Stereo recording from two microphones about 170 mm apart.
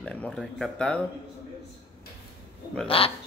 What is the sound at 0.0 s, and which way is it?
Speech, 5° left (ahead or behind).